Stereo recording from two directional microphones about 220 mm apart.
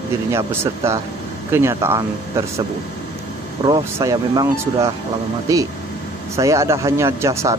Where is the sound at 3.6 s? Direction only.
15° right (ahead or behind).